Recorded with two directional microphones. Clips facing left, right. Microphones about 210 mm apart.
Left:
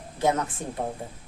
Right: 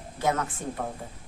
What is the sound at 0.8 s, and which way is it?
Speech, 25° left (ahead or behind).